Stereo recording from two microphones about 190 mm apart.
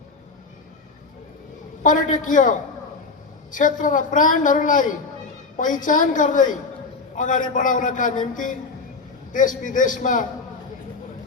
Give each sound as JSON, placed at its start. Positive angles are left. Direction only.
{"t": 1.8, "sound": "a man's voice", "side_deg": 45}